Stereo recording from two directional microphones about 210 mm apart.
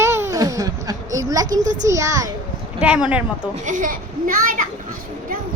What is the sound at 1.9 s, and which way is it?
A woman's voice, 15° right (ahead or behind).